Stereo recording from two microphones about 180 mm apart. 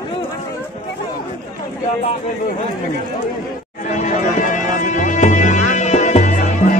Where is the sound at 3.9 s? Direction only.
45° left (ahead or behind).